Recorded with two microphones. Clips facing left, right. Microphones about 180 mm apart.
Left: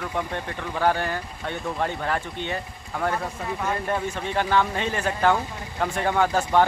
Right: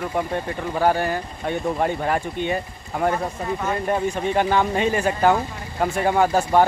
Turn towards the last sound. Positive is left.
turn(degrees=-10)  # may be behind; listen again after turning